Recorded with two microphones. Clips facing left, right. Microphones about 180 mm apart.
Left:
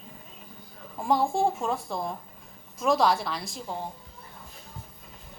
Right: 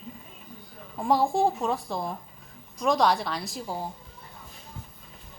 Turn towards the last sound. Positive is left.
turn(degrees=0)  # may be behind; listen again after turning